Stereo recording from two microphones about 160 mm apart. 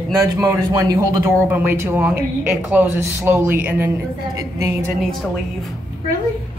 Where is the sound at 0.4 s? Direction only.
25° right (ahead or behind).